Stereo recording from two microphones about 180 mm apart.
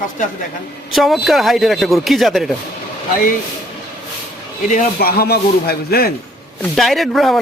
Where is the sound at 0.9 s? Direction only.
Centre (ahead or behind).